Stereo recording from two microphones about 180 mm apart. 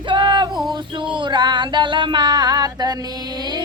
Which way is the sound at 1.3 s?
25° right (ahead or behind).